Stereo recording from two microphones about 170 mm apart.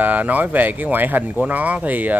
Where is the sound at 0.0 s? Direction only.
10° right (ahead or behind).